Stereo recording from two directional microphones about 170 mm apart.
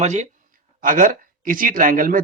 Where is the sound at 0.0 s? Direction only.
45° right (ahead or behind).